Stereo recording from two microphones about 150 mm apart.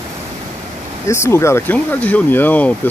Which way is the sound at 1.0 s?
20° left (ahead or behind).